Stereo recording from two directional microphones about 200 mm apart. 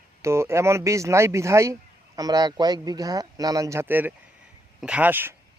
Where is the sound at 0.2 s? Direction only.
15° right (ahead or behind).